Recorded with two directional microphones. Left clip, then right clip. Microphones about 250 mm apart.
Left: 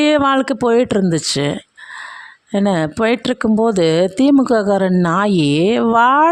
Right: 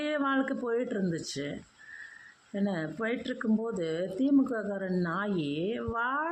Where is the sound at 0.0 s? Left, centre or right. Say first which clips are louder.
Left 16 dB; left.